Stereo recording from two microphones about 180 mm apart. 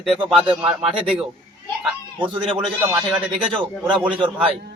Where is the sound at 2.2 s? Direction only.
5° right (ahead or behind).